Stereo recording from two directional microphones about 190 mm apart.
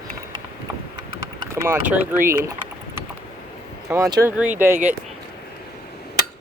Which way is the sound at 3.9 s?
20° right (ahead or behind).